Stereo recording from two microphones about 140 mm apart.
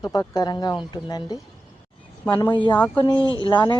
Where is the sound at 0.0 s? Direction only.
30° left (ahead or behind).